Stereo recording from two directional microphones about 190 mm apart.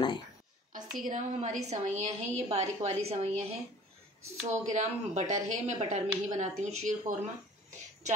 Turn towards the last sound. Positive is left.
turn(degrees=-40)  # may be behind; listen again after turning